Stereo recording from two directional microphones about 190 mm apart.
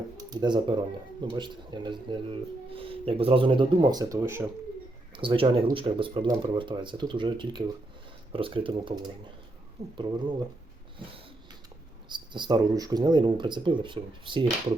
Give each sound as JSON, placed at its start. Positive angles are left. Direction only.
{"t": 0.3, "sound": "speech", "side_deg": -25}
{"t": 5.1, "sound": "speech", "side_deg": -25}
{"t": 10.0, "sound": "speech", "side_deg": -25}
{"t": 12.0, "sound": "speech", "side_deg": -25}